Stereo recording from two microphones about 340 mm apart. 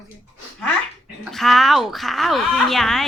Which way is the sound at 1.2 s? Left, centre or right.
Centre.